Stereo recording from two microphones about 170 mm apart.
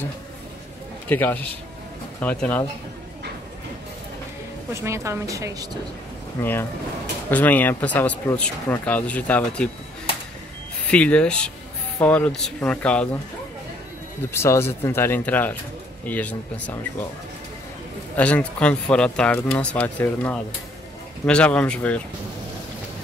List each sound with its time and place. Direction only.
1.0 s speech: 10° left (ahead or behind)
4.7 s speech: 15° right (ahead or behind)
6.4 s speech: 10° left (ahead or behind)
10.9 s speech: 5° left (ahead or behind)
14.3 s speech: 15° left (ahead or behind)
18.1 s speech: 10° left (ahead or behind)